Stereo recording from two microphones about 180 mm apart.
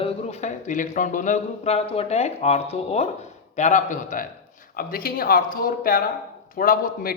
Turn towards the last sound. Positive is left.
turn(degrees=50)  # may be behind; listen again after turning